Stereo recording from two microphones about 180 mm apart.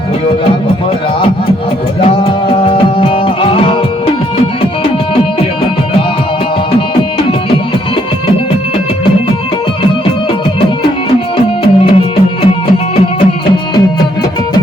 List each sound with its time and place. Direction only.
2.0 s music: 30° left (ahead or behind)
11.3 s music: 30° left (ahead or behind)